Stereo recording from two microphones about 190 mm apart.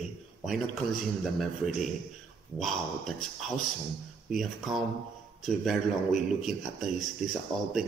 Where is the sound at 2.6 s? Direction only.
Centre (ahead or behind).